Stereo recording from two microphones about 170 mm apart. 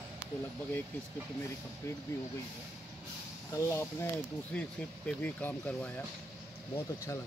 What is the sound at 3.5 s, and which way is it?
Speech, 15° left (ahead or behind).